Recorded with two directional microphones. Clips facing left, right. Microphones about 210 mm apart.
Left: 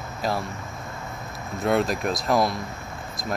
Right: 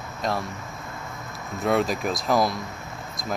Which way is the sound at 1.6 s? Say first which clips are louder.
Even; centre (ahead or behind).